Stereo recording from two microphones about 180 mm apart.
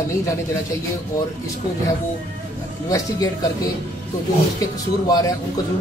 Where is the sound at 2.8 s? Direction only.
20° left (ahead or behind).